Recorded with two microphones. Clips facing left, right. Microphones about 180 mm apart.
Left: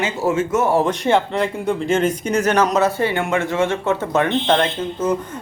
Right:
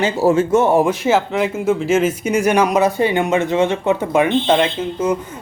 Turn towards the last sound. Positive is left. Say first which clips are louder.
# right 2 dB
turn(degrees=-10)  # may be behind; listen again after turning